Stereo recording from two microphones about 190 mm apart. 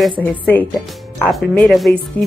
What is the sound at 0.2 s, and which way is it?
Speech, 10° left (ahead or behind).